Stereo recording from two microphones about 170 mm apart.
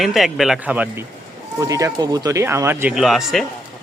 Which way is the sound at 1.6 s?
20° right (ahead or behind).